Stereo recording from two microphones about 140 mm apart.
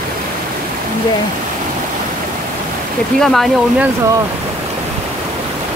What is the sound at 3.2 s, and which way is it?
Speech, centre (ahead or behind).